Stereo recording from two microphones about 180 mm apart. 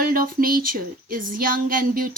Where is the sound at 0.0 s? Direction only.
55° right (ahead or behind).